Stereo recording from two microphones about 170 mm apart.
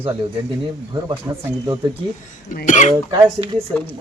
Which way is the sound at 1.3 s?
20° right (ahead or behind).